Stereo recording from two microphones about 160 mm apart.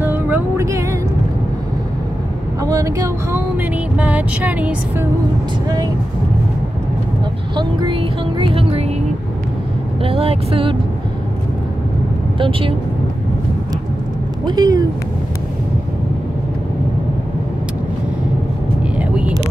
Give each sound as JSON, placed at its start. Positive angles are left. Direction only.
{"t": 0.0, "sound": "music", "side_deg": -15}
{"t": 2.6, "sound": "a sound", "side_deg": -20}
{"t": 7.5, "sound": "music", "side_deg": -30}
{"t": 10.0, "sound": "speech", "side_deg": -35}
{"t": 12.4, "sound": "speech", "side_deg": -35}
{"t": 14.4, "sound": "speech", "side_deg": -25}
{"t": 18.9, "sound": "vehicle", "side_deg": -10}